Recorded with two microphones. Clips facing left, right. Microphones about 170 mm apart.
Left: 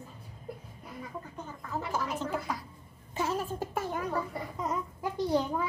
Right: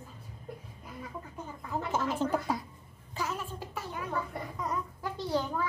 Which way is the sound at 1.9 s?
20° right (ahead or behind).